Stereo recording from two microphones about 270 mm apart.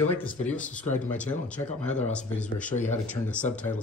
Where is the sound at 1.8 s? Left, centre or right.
Left.